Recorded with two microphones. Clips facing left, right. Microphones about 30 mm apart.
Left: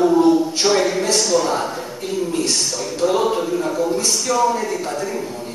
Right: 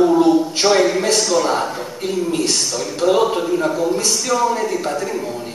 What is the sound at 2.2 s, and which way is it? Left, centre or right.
Speech, right.